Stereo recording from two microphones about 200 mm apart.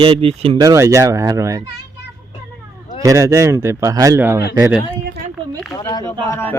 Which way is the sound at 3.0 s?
15° right (ahead or behind).